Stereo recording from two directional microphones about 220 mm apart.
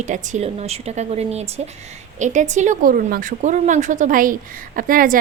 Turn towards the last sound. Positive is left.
turn(degrees=-40)  # may be behind; listen again after turning